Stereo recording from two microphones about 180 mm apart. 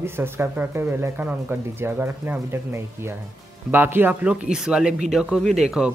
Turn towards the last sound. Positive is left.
turn(degrees=0)  # may be behind; listen again after turning